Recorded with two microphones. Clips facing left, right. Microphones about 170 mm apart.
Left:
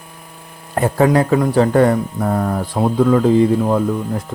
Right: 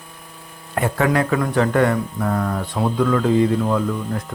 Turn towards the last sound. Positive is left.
turn(degrees=30)  # may be behind; listen again after turning